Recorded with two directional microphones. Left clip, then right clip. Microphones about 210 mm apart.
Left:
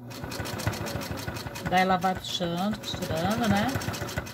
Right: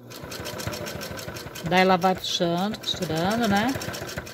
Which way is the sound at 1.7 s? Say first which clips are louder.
Right 4 dB; 55° right (ahead or behind).